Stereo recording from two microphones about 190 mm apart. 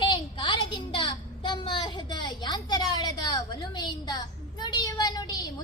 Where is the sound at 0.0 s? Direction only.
25° left (ahead or behind).